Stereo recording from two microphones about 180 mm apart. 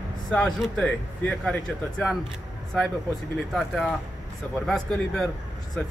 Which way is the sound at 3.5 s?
Centre (ahead or behind).